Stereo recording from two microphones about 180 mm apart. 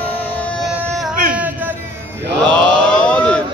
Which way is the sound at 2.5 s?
5° left (ahead or behind).